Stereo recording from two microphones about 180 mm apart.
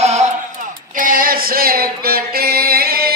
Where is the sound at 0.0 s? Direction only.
40° right (ahead or behind).